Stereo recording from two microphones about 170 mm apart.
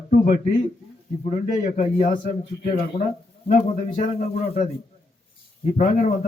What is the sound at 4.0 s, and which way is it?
Speech, 35° left (ahead or behind).